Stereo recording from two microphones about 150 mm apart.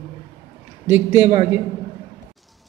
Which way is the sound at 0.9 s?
15° right (ahead or behind).